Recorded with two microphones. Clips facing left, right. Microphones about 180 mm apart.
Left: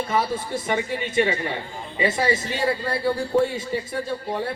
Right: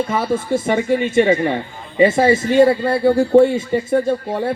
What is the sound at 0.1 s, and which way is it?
Speech, 50° right (ahead or behind).